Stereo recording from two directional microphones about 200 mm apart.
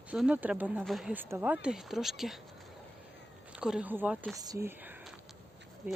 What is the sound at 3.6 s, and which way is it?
Speech, 5° right (ahead or behind).